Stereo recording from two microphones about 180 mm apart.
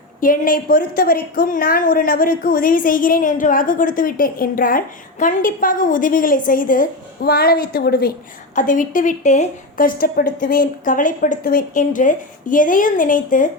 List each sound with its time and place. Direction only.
0.2 s a woman's voice: 50° left (ahead or behind)
8.5 s a woman's voice: 45° left (ahead or behind)